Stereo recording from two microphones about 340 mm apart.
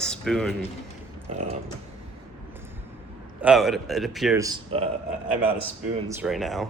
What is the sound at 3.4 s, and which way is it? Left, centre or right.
A man's voice, centre.